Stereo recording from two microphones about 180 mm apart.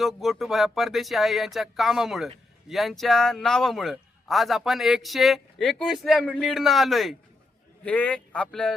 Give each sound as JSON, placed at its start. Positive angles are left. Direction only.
{"t": 0.0, "sound": "a man's voice", "side_deg": 0}